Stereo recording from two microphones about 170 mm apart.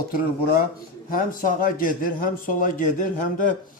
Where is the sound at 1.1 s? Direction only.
50° left (ahead or behind).